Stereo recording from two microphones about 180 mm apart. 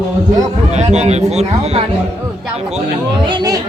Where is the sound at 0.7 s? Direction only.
40° right (ahead or behind).